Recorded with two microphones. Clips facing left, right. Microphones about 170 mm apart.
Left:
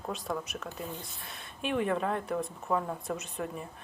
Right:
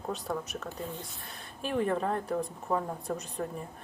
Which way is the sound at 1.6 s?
35° right (ahead or behind).